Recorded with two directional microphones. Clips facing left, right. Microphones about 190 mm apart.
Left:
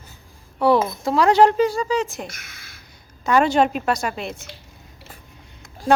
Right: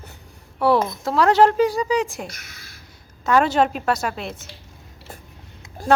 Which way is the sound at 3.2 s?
5° right (ahead or behind).